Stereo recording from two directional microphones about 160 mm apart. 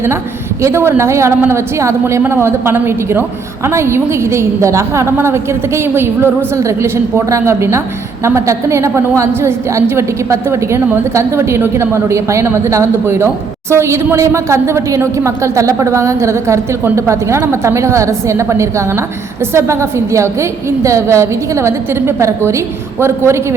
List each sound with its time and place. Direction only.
0.6 s a woman's voice: 15° right (ahead or behind)